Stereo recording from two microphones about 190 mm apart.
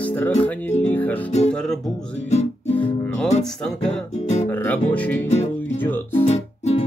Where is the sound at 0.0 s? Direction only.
10° left (ahead or behind).